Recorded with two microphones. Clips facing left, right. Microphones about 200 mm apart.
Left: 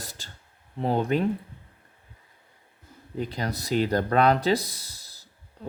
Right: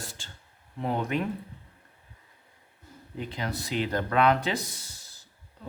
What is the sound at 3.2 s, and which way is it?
Speech, 40° left (ahead or behind).